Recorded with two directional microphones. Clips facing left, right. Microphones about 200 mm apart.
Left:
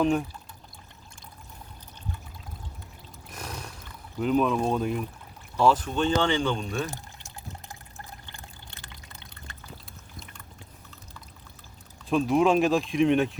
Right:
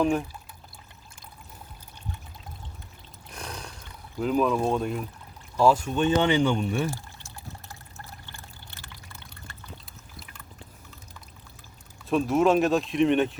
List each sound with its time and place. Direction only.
3.3 s a sound: 5° left (ahead or behind)
4.2 s speech: centre (ahead or behind)
5.5 s speech: 10° right (ahead or behind)
6.9 s water: 20° left (ahead or behind)
12.0 s speech: centre (ahead or behind)